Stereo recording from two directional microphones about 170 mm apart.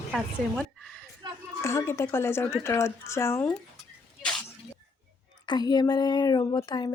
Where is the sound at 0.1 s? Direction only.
Centre (ahead or behind).